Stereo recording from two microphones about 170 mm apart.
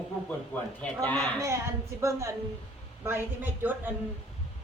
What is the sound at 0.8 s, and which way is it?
Speech, 5° left (ahead or behind).